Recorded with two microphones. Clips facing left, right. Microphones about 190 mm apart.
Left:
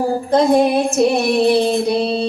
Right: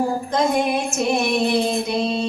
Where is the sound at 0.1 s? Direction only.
35° left (ahead or behind).